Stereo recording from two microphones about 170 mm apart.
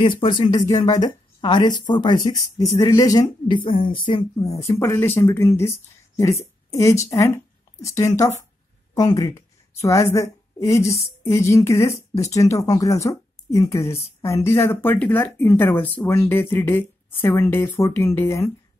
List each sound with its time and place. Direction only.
0.0 s speech: 30° left (ahead or behind)
6.7 s a woman's voice: 20° left (ahead or behind)